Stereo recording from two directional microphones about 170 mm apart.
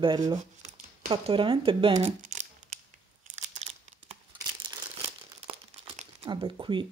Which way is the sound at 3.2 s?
45° right (ahead or behind).